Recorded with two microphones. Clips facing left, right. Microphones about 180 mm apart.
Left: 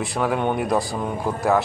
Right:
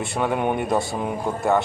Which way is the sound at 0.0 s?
Centre (ahead or behind).